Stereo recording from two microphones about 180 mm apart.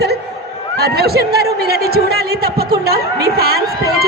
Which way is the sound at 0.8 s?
60° right (ahead or behind).